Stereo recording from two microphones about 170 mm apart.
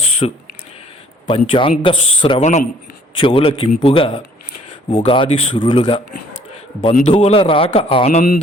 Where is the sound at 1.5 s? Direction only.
30° left (ahead or behind).